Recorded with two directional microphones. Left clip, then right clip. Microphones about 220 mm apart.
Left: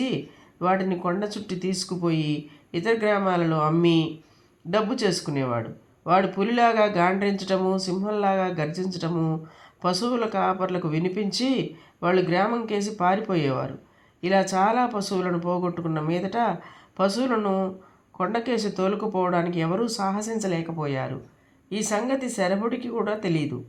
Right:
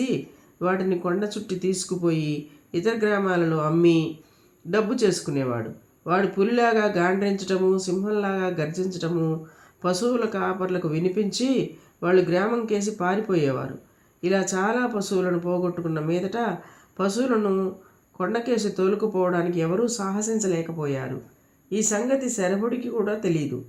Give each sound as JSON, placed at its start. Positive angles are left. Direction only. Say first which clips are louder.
{"t": 0.6, "sound": "speech", "louder": "even", "side_deg": 25}